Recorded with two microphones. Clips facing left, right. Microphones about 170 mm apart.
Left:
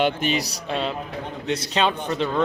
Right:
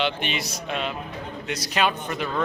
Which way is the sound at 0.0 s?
40° left (ahead or behind).